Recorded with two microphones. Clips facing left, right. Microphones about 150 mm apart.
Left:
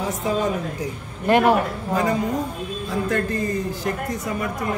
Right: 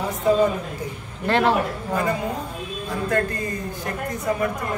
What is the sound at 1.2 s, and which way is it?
Speech, 15° left (ahead or behind).